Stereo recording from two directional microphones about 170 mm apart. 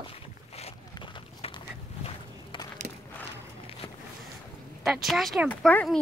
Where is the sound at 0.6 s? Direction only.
35° left (ahead or behind).